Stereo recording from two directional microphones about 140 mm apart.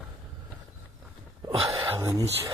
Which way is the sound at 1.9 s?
20° right (ahead or behind).